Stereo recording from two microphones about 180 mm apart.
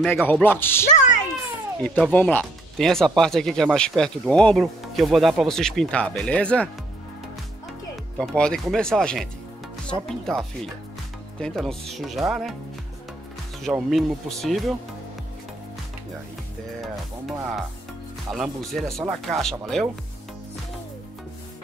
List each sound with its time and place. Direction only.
0.0 s speech: 10° left (ahead or behind)
0.8 s a child's voice: 40° left (ahead or behind)
1.8 s speech: 5° left (ahead or behind)
7.9 s speech: centre (ahead or behind)
13.7 s speech: centre (ahead or behind)
16.8 s speech: centre (ahead or behind)